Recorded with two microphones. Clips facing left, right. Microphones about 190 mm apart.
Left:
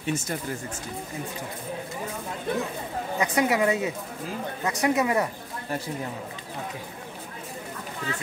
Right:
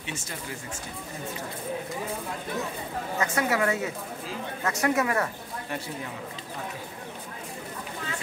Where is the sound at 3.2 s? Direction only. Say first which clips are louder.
Left 3 dB; 15° left (ahead or behind).